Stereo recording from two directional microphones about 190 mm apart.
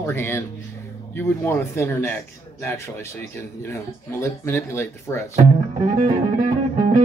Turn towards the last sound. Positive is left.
turn(degrees=-35)  # may be behind; listen again after turning